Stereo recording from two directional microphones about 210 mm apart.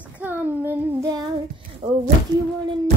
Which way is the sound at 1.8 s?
25° right (ahead or behind).